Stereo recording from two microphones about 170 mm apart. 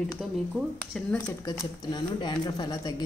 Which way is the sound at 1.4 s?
25° left (ahead or behind).